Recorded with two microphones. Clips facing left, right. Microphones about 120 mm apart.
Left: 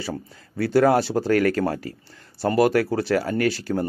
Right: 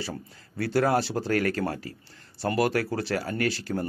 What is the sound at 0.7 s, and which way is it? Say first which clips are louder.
Speech: left 6 dB; 50° left (ahead or behind).